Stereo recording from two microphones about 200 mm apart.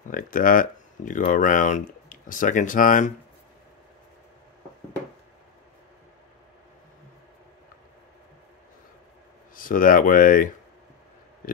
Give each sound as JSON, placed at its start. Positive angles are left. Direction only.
{"t": 0.1, "sound": "speech", "side_deg": 45}
{"t": 9.6, "sound": "speech", "side_deg": 45}